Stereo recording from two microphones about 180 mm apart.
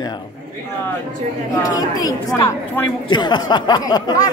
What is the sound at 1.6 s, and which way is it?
Speech, 20° left (ahead or behind).